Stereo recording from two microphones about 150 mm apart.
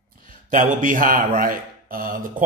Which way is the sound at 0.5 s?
60° right (ahead or behind).